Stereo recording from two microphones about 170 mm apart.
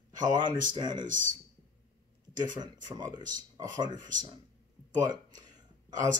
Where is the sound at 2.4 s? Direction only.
25° right (ahead or behind).